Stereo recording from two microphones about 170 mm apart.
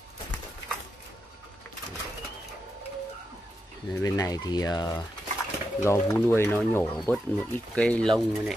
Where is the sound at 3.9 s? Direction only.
20° left (ahead or behind).